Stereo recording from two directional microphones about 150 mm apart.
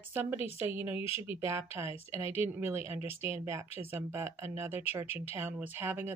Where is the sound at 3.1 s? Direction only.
40° left (ahead or behind).